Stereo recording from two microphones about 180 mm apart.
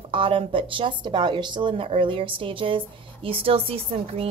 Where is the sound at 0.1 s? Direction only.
30° right (ahead or behind).